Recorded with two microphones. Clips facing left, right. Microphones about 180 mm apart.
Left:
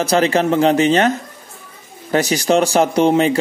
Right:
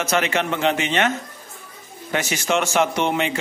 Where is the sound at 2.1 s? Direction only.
35° left (ahead or behind).